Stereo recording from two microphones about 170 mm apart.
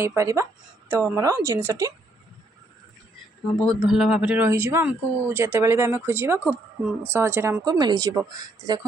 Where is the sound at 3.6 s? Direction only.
Centre (ahead or behind).